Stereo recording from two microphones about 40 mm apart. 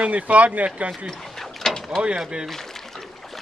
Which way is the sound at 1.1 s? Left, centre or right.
Centre.